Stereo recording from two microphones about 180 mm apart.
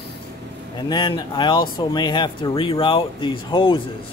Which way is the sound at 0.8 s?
25° left (ahead or behind).